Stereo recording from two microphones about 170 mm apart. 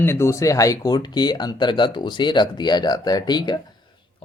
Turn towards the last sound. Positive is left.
turn(degrees=25)  # may be behind; listen again after turning